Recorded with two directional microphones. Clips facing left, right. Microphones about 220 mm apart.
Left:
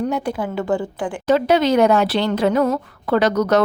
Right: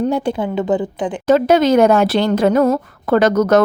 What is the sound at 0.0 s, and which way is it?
A woman's voice, 25° right (ahead or behind).